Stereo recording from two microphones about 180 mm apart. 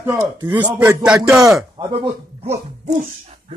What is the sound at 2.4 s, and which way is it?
Speech, 35° right (ahead or behind).